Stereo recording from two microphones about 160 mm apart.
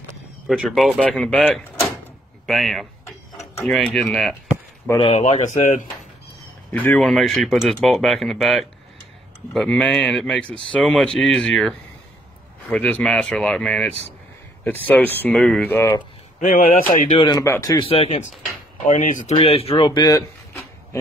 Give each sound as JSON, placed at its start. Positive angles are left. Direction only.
{"t": 0.5, "sound": "speech", "side_deg": 0}
{"t": 4.9, "sound": "speech", "side_deg": 40}
{"t": 6.7, "sound": "speech", "side_deg": 10}
{"t": 16.3, "sound": "a man's voice", "side_deg": 60}
{"t": 17.1, "sound": "speech", "side_deg": 25}
{"t": 17.8, "sound": "speech", "side_deg": 35}
{"t": 18.9, "sound": "speech", "side_deg": 55}
{"t": 19.3, "sound": "speech", "side_deg": 35}
{"t": 19.8, "sound": "a sound", "side_deg": 25}